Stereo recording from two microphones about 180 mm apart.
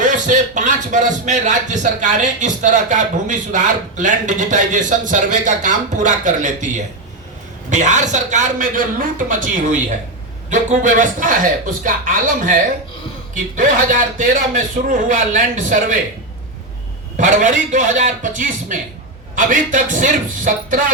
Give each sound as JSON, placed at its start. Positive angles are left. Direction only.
{"t": 0.0, "sound": "speech", "side_deg": -45}
{"t": 17.2, "sound": "speech", "side_deg": -45}